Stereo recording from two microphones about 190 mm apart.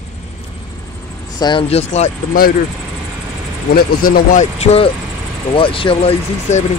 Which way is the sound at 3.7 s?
55° left (ahead or behind).